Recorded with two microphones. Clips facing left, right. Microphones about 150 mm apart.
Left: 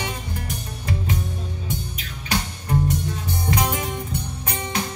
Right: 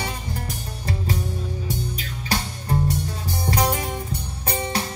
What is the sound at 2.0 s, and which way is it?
Music, 35° right (ahead or behind).